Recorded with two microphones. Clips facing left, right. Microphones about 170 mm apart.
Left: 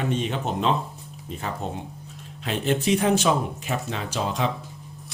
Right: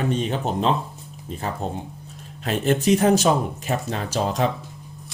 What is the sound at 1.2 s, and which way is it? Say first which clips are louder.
Speech: right 3 dB; 40° right (ahead or behind).